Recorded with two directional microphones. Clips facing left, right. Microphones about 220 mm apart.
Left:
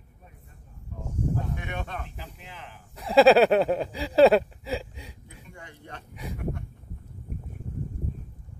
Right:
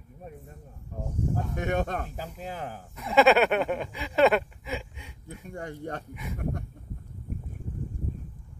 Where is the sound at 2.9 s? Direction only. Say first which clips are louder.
Left 4 dB; 35° left (ahead or behind).